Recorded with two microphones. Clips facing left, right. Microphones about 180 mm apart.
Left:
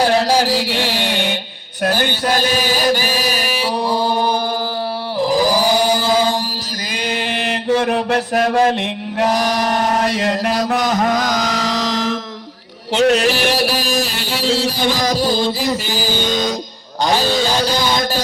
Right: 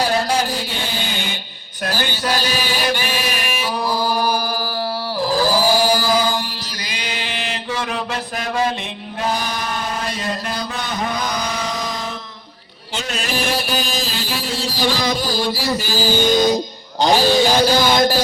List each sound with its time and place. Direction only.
0.4 s mantra: 85° left; by 1.4 s 70° left (ahead or behind)
1.8 s chant: 55° left (ahead or behind); by 4.3 s 25° left (ahead or behind)
5.2 s a sound: 20° left (ahead or behind)
6.9 s mantra: 50° left (ahead or behind)
9.2 s chant: 80° left
12.9 s mantra: 70° left (ahead or behind)
15.0 s chant: 35° left (ahead or behind)
15.3 s music: 25° left (ahead or behind)
17.0 s mantra: 15° right (ahead or behind)